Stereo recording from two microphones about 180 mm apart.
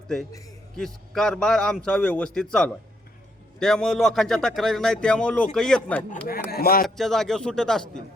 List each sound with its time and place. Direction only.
1.1 s speech: 5° left (ahead or behind)
6.5 s speech: 55° left (ahead or behind)
6.8 s speech: centre (ahead or behind)